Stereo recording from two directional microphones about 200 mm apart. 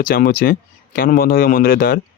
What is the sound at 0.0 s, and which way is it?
Speech, 45° left (ahead or behind).